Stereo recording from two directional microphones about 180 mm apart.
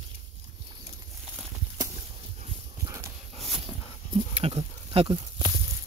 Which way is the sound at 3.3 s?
Centre (ahead or behind).